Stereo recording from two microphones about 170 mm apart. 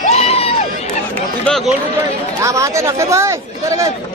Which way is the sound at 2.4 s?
20° right (ahead or behind).